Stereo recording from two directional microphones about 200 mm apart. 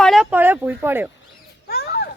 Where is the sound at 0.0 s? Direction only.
Centre (ahead or behind).